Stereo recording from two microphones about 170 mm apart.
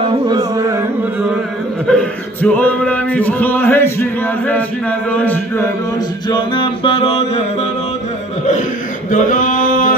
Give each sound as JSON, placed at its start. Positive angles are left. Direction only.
{"t": 0.0, "sound": "carnatic music", "side_deg": -25}
{"t": 1.9, "sound": "male singing", "side_deg": 5}
{"t": 6.2, "sound": "mantra", "side_deg": 25}
{"t": 9.1, "sound": "male singing", "side_deg": 50}